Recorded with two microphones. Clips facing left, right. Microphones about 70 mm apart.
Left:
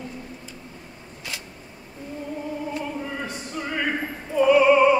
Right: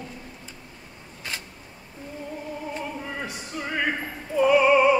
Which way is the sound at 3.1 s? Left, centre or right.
Centre.